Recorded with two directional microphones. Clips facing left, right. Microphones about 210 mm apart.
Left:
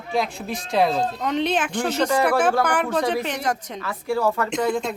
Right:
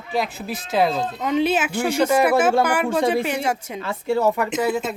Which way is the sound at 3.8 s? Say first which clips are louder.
Right 4 dB; 25° right (ahead or behind).